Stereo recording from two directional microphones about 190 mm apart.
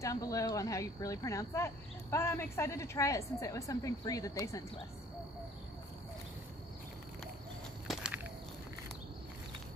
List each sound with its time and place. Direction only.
0.0 s speech: 15° left (ahead or behind)
7.9 s walk: 5° right (ahead or behind)